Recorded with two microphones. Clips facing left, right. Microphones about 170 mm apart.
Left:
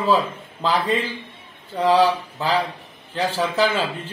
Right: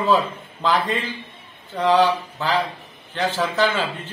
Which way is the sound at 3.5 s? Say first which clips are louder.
Left 2 dB; 35° left (ahead or behind).